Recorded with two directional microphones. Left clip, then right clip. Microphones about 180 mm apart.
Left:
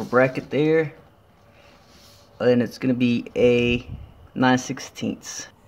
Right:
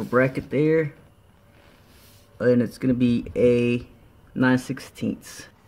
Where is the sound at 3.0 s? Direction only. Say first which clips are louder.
Left 1 dB; 35° right (ahead or behind).